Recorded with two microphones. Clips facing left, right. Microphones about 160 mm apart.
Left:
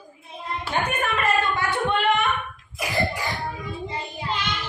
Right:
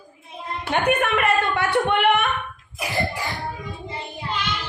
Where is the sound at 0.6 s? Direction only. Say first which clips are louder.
Right 6 dB; 65° right (ahead or behind).